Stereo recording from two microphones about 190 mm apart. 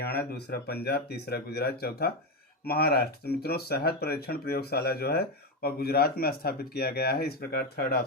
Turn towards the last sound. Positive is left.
turn(degrees=55)  # may be behind; listen again after turning